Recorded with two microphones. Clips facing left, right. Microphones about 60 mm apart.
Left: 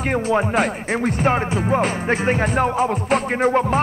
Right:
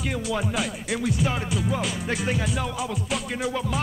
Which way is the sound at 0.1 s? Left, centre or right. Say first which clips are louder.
Left 10 dB; left.